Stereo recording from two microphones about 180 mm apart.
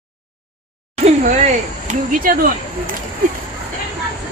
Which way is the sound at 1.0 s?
40° right (ahead or behind).